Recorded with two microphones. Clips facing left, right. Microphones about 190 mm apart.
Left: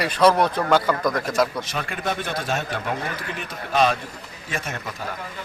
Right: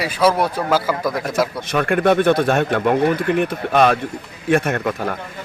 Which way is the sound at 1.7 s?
60° right (ahead or behind).